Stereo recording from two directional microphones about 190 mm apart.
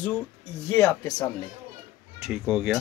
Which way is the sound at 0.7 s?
15° left (ahead or behind).